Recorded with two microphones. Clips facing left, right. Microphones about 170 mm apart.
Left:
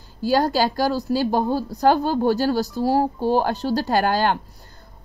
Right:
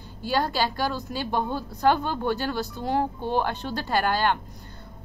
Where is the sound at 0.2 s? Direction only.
40° left (ahead or behind).